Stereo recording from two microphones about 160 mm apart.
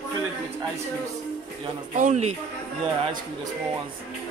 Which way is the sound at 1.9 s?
50° right (ahead or behind).